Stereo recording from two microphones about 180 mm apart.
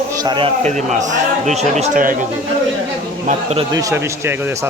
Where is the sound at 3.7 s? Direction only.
15° right (ahead or behind).